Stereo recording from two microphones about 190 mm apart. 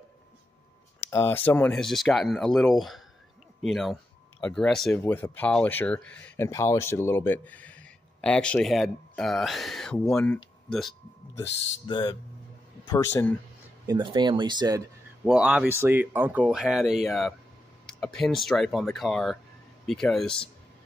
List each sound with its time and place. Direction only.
1.0 s speech: 10° left (ahead or behind)
11.9 s speech: 20° left (ahead or behind)
13.8 s speech: 25° right (ahead or behind)
15.2 s speech: 5° right (ahead or behind)